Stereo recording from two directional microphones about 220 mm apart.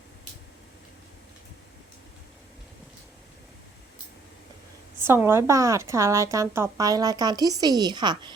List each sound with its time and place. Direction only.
4.9 s speech: 10° right (ahead or behind)